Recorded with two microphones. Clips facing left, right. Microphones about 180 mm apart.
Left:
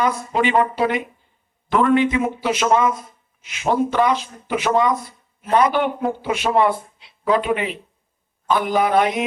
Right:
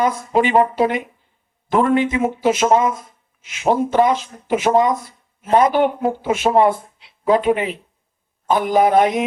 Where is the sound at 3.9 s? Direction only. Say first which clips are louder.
Right 3 dB; 45° right (ahead or behind).